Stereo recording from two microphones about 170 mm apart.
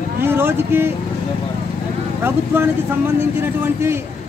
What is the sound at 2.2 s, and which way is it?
A man's voice, 15° right (ahead or behind).